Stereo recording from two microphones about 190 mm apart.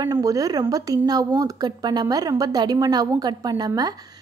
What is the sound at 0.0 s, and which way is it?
A woman's voice, 20° right (ahead or behind).